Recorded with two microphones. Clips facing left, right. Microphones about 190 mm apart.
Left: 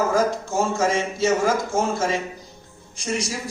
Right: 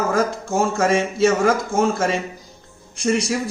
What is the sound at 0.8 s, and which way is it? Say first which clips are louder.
Speech: right 4 dB; 60° right (ahead or behind).